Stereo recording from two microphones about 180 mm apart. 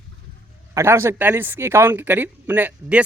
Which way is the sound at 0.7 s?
15° right (ahead or behind).